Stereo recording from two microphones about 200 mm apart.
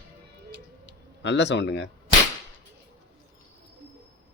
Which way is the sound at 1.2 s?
60° left (ahead or behind).